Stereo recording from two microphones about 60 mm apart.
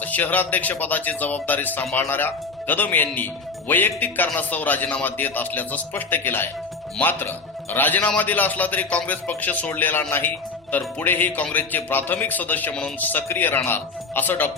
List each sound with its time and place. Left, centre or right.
0.0 s speech: left